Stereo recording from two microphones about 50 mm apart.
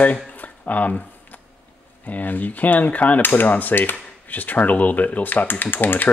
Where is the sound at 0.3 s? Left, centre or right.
Left.